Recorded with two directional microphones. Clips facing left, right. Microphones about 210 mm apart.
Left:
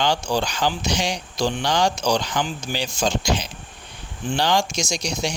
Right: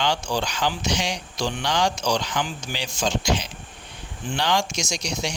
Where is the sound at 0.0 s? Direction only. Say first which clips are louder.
Left 3 dB; 35° left (ahead or behind).